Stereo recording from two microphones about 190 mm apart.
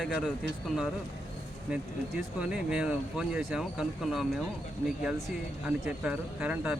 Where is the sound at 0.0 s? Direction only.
5° left (ahead or behind).